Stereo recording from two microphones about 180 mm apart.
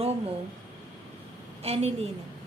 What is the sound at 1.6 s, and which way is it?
Speech, 35° right (ahead or behind).